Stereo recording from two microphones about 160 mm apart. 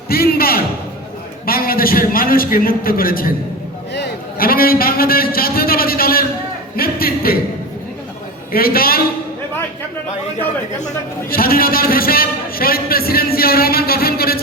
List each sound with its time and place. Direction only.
0.1 s a man's voice: 70° left (ahead or behind)
3.9 s a man's voice: 80° left
8.5 s a man's voice: 70° left (ahead or behind)
11.3 s a man's voice: 65° left (ahead or behind)